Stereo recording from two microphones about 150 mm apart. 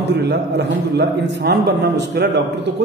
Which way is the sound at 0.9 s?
90° right.